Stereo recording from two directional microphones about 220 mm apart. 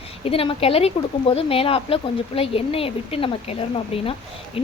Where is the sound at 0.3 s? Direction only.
25° left (ahead or behind).